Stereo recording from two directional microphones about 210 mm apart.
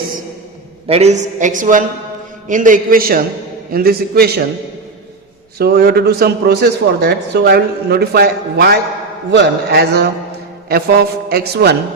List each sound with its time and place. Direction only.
0.9 s a woman's voice: 30° right (ahead or behind); by 4.4 s 45° right (ahead or behind)
5.5 s a man's voice: 45° right (ahead or behind)